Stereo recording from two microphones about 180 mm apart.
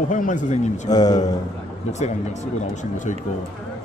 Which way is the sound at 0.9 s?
20° left (ahead or behind).